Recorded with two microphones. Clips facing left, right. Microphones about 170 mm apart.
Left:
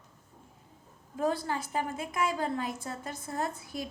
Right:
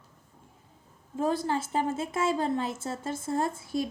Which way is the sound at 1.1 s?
25° right (ahead or behind).